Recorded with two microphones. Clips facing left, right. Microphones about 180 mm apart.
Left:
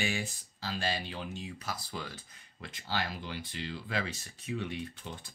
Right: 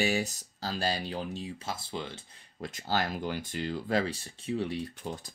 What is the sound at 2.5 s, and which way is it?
Speech, 40° right (ahead or behind).